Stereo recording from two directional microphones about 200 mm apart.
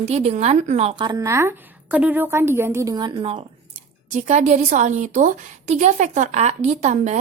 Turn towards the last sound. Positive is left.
turn(degrees=-35)  # may be behind; listen again after turning